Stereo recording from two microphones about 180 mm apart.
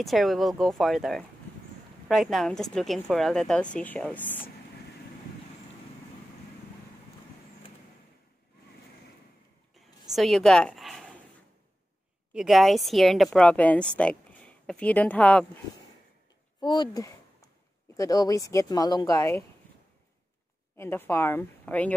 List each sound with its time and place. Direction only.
0.0 s a woman's voice: centre (ahead or behind)
10.1 s a woman's voice: centre (ahead or behind)
12.4 s speech: centre (ahead or behind)
16.5 s a sound: 25° left (ahead or behind)
17.9 s speech: 20° left (ahead or behind)
20.7 s a woman's voice: 10° left (ahead or behind)